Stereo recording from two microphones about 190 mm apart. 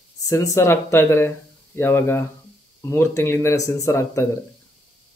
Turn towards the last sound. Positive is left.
turn(degrees=15)  # may be behind; listen again after turning